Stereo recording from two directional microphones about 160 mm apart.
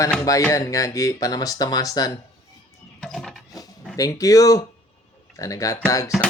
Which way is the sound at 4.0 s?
20° left (ahead or behind).